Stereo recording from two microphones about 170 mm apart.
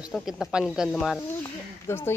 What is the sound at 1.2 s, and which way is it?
Speech, 15° left (ahead or behind).